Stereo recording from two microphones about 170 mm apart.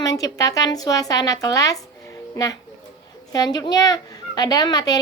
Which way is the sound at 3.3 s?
25° left (ahead or behind).